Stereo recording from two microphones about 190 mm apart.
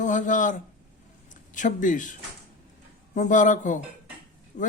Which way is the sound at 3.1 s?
40° left (ahead or behind).